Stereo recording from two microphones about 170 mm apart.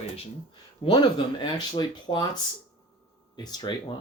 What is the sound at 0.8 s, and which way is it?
Speech, 30° left (ahead or behind).